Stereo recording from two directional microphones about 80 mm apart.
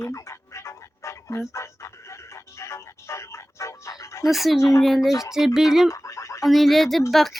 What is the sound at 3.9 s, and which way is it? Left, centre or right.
Chicken, left.